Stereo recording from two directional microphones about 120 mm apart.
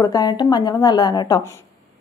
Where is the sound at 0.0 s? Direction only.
35° left (ahead or behind).